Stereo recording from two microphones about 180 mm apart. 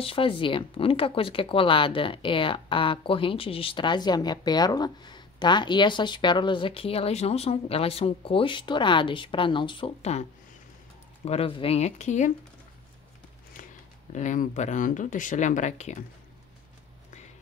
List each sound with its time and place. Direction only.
0.0 s speech: 30° left (ahead or behind)
11.2 s speech: 30° left (ahead or behind)
14.1 s speech: 45° left (ahead or behind)